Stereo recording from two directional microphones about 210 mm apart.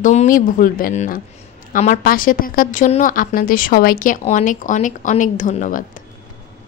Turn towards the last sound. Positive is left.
turn(degrees=40)  # may be behind; listen again after turning